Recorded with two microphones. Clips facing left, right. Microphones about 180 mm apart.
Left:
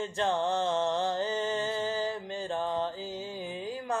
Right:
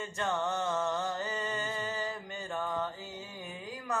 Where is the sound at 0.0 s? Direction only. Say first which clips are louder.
Left 4 dB; 30° left (ahead or behind).